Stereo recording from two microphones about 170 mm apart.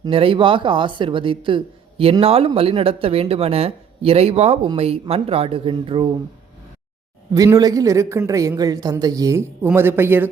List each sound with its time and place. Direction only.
0.0 s speech: 30° right (ahead or behind)
7.3 s speech: 20° right (ahead or behind)